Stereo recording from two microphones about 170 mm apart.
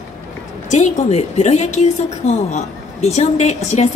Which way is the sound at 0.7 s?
45° left (ahead or behind).